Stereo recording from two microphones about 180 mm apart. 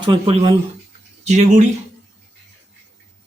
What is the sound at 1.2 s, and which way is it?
Speech, 40° right (ahead or behind).